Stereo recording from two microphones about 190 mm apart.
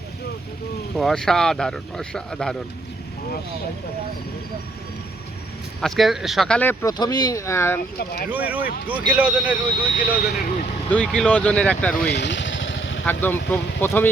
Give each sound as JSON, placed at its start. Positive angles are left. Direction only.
{"t": 0.9, "sound": "speech", "side_deg": 0}
{"t": 5.8, "sound": "speech", "side_deg": 0}
{"t": 6.9, "sound": "speech", "side_deg": 20}
{"t": 7.9, "sound": "speech", "side_deg": 55}
{"t": 8.3, "sound": "speech", "side_deg": -10}
{"t": 9.9, "sound": "speech", "side_deg": 45}
{"t": 10.8, "sound": "speech", "side_deg": 5}
{"t": 11.9, "sound": "vehicle", "side_deg": 60}
{"t": 13.1, "sound": "speech", "side_deg": 10}